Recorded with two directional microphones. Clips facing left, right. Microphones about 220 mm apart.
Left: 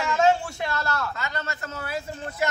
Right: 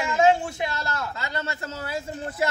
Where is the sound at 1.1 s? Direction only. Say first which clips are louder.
Right 1 dB; 30° right (ahead or behind).